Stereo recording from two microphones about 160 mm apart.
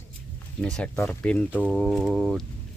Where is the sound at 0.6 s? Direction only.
5° left (ahead or behind).